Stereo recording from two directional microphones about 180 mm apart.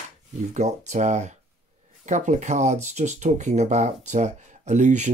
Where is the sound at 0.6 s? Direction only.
40° right (ahead or behind).